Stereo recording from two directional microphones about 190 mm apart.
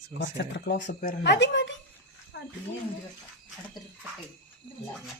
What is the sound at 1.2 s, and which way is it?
Speech, 65° left (ahead or behind).